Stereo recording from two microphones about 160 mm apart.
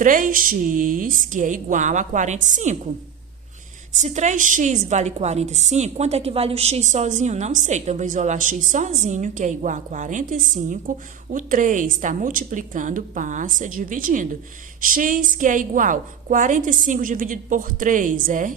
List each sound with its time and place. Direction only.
0.0 s a woman's voice: 55° right (ahead or behind)
3.9 s a woman's voice: 45° right (ahead or behind)